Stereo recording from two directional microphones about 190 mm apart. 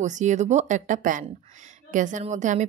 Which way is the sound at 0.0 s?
40° right (ahead or behind).